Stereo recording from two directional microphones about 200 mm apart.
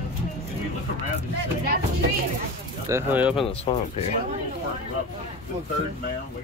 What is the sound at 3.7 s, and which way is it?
Speech, 25° left (ahead or behind).